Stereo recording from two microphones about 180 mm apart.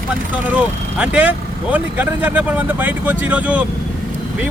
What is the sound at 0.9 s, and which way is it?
Speech, 5° right (ahead or behind).